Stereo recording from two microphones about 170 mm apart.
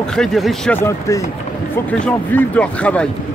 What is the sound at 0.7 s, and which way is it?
Speech, 15° left (ahead or behind).